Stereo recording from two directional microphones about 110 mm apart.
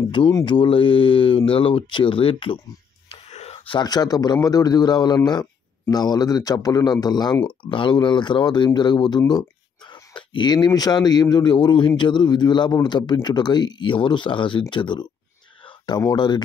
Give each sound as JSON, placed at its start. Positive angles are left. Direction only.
{"t": 0.2, "sound": "speech", "side_deg": 45}
{"t": 3.3, "sound": "whispering", "side_deg": 80}
{"t": 3.8, "sound": "speech", "side_deg": 35}
{"t": 7.4, "sound": "speech", "side_deg": 50}